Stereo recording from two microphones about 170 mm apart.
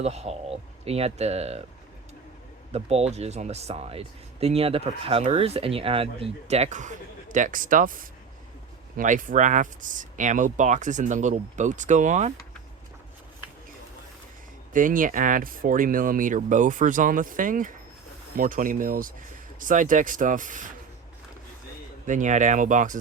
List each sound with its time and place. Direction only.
0.0 s speech: 40° right (ahead or behind)
2.7 s speech: 40° right (ahead or behind)
14.7 s speech: 50° right (ahead or behind)
22.0 s speech: 45° right (ahead or behind)